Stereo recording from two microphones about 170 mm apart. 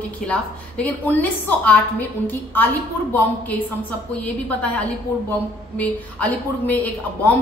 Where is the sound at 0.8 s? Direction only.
10° left (ahead or behind).